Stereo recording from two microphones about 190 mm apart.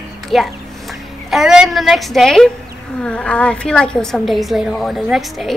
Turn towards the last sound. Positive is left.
turn(degrees=0)  # may be behind; listen again after turning